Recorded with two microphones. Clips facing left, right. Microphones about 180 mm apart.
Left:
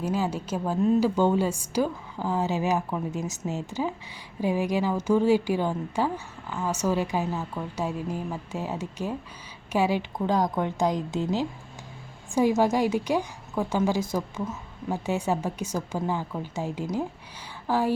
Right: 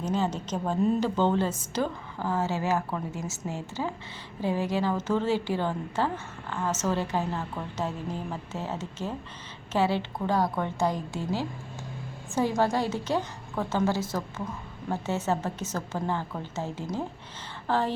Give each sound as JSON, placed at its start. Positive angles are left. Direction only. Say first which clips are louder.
{"t": 0.0, "sound": "a woman's voice", "louder": "left 1 dB", "side_deg": 10}